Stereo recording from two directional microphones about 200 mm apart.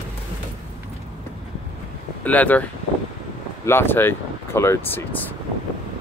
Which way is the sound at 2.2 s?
10° left (ahead or behind).